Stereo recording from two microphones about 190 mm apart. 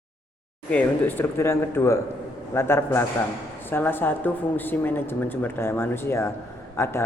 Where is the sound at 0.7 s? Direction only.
10° left (ahead or behind).